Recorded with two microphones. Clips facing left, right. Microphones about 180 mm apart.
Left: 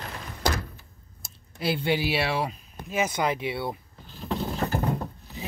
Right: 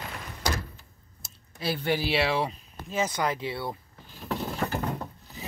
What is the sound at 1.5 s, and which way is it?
Speech, 15° left (ahead or behind).